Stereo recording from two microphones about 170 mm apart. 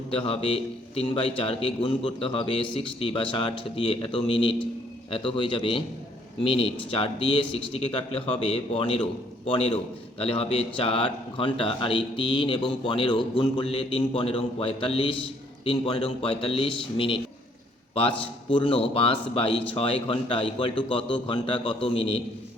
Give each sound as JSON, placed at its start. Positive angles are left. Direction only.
{"t": 0.1, "sound": "a man's voice", "side_deg": 30}
{"t": 18.5, "sound": "a man's voice", "side_deg": 35}